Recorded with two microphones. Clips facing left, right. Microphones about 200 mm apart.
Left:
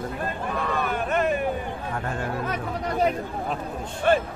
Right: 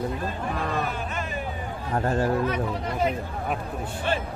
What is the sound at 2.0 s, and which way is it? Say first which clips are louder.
Speech: right 8 dB; 35° right (ahead or behind).